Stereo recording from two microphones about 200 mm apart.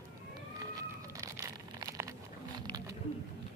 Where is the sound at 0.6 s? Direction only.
15° right (ahead or behind).